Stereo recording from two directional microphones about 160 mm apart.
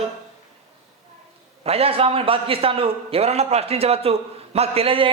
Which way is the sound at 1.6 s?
40° right (ahead or behind).